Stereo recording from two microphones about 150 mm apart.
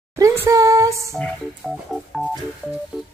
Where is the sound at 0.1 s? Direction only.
20° right (ahead or behind).